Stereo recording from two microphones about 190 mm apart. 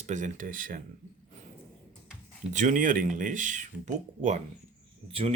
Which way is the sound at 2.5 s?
40° right (ahead or behind).